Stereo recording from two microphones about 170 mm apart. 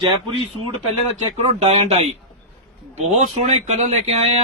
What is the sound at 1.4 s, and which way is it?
Speech, 35° right (ahead or behind).